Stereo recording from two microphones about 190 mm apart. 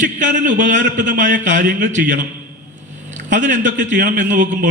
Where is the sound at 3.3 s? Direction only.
40° right (ahead or behind).